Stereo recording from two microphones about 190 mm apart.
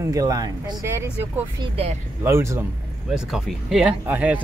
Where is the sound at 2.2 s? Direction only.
15° right (ahead or behind).